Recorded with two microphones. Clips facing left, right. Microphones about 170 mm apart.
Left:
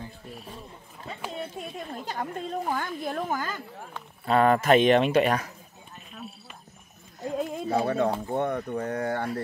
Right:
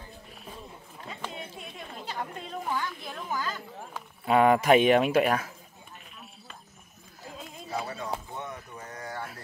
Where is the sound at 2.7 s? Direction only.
50° left (ahead or behind).